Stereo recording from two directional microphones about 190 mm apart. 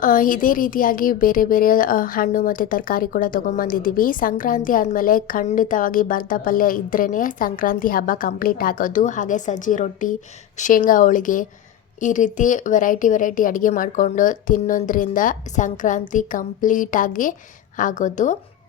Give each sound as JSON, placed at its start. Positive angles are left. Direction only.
{"t": 0.0, "sound": "a woman's voice", "side_deg": 45}